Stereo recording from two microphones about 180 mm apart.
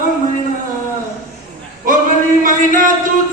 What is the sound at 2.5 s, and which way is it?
Music, 50° right (ahead or behind).